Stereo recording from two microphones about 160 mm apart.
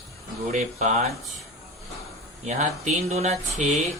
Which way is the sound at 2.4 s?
50° right (ahead or behind).